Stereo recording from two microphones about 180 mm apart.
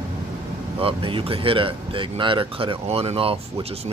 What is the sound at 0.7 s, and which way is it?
Speech, 30° right (ahead or behind).